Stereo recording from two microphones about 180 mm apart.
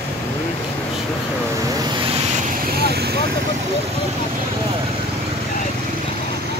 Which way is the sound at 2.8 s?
60° right (ahead or behind).